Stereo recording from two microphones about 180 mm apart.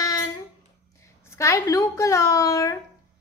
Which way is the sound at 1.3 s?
15° left (ahead or behind).